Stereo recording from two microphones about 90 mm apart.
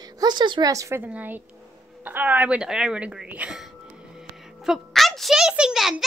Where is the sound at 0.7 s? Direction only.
35° right (ahead or behind).